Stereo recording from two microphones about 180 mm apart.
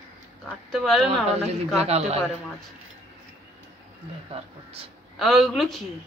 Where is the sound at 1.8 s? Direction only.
35° right (ahead or behind).